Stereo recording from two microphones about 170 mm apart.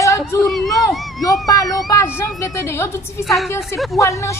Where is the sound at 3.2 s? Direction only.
Centre (ahead or behind).